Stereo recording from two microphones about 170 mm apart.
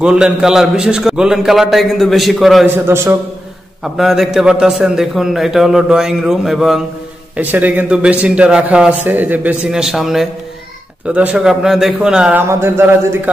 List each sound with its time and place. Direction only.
0.0 s a man's voice: 5° right (ahead or behind)
2.7 s a man's voice: 15° right (ahead or behind)
3.8 s a man's voice: centre (ahead or behind)